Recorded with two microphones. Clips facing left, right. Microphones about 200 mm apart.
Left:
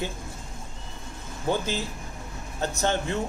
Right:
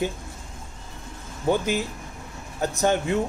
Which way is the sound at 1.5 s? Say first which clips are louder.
Right 4 dB; 15° right (ahead or behind).